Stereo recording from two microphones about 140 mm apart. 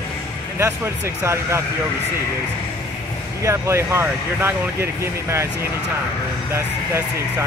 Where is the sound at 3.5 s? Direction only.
20° right (ahead or behind).